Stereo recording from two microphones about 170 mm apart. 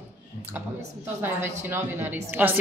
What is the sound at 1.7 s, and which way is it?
Speech, 10° right (ahead or behind).